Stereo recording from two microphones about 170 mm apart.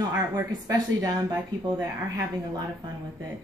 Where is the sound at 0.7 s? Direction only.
20° right (ahead or behind).